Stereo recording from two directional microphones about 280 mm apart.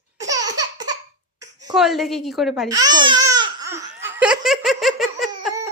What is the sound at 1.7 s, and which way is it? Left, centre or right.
Speech, centre.